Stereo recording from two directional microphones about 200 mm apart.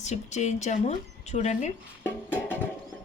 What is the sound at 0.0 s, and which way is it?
Speech, 35° left (ahead or behind).